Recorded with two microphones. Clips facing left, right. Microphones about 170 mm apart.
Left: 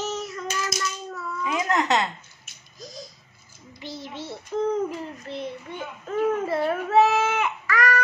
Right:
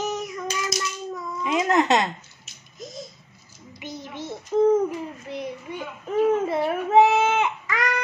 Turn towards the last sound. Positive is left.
turn(degrees=-20)  # may be behind; listen again after turning